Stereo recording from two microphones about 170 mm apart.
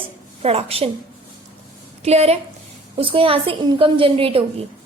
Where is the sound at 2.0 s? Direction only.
40° right (ahead or behind).